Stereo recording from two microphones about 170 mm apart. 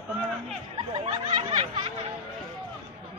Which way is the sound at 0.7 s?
35° right (ahead or behind).